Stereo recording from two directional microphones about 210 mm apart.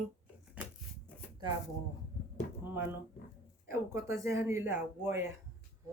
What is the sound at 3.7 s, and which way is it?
Speech, 15° right (ahead or behind).